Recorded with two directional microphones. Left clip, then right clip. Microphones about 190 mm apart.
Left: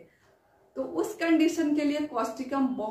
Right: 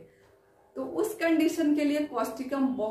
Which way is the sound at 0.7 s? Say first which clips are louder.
Even; 15° left (ahead or behind).